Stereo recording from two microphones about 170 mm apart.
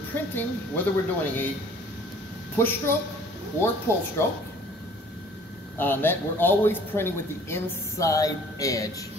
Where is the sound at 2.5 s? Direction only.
15° left (ahead or behind).